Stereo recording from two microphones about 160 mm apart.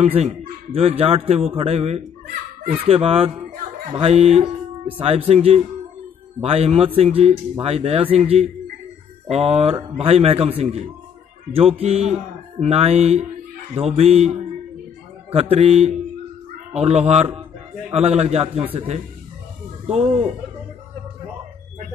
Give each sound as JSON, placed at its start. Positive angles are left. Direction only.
{"t": 0.0, "sound": "a man's voice", "side_deg": -40}
{"t": 15.3, "sound": "a man's voice", "side_deg": -40}